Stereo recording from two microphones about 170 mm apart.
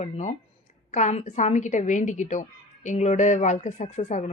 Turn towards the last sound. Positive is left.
turn(degrees=45)  # may be behind; listen again after turning